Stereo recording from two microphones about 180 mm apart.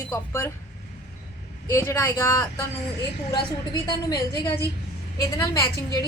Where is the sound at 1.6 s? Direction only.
15° left (ahead or behind).